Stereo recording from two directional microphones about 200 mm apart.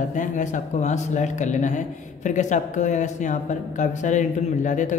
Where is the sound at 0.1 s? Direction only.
40° left (ahead or behind).